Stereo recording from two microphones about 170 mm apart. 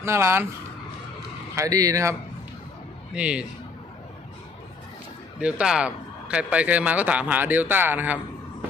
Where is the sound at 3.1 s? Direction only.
5° right (ahead or behind).